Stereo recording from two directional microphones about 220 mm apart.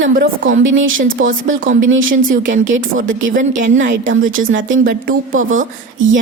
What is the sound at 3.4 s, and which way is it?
Speech, 35° right (ahead or behind).